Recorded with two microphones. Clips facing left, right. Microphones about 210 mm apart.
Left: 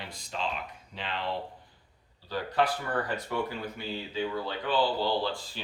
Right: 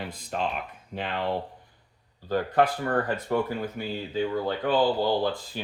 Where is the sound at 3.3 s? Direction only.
45° right (ahead or behind).